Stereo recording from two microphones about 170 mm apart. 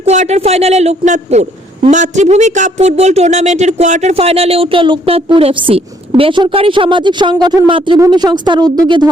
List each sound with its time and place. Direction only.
0.0 s a man's voice: 40° right (ahead or behind); by 9.0 s 25° right (ahead or behind)